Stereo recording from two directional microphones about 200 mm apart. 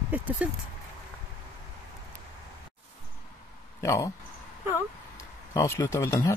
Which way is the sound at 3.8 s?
15° left (ahead or behind).